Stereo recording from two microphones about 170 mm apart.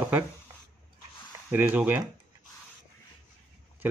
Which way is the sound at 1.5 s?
10° right (ahead or behind).